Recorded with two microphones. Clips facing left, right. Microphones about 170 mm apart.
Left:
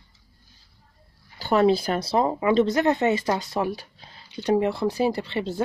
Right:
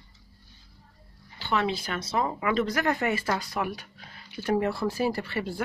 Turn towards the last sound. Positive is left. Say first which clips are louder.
# left 4 dB
turn(degrees=20)  # may be behind; listen again after turning